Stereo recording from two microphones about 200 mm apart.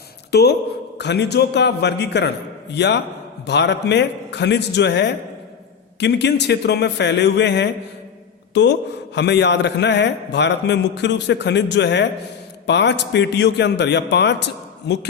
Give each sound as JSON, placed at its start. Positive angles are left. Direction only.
{"t": 0.3, "sound": "a man's voice", "side_deg": 55}
{"t": 9.1, "sound": "a man's voice", "side_deg": 60}